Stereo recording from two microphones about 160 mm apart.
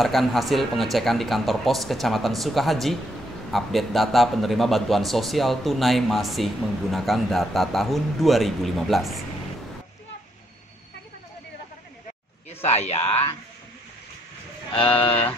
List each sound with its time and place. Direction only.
0.0 s a man's voice: centre (ahead or behind)
12.4 s speech: 40° left (ahead or behind)
14.7 s speech: 35° left (ahead or behind)